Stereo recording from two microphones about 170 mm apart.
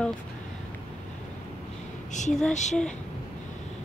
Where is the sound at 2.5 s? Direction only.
45° left (ahead or behind).